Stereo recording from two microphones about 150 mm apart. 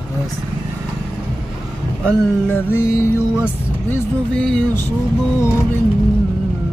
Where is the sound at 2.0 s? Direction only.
10° left (ahead or behind).